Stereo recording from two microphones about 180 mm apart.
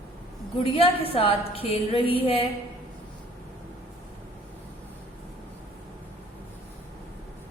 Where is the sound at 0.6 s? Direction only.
30° left (ahead or behind).